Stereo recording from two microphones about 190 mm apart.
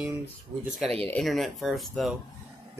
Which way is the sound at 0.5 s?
35° right (ahead or behind).